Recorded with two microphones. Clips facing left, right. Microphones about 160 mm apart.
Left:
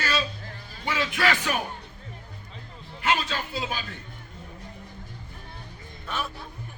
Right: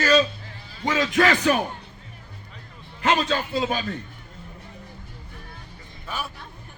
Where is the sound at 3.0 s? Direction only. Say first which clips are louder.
Right 5 dB; 40° right (ahead or behind).